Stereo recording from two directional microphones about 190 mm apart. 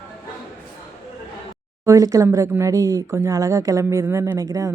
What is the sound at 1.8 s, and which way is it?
Speech, 15° right (ahead or behind).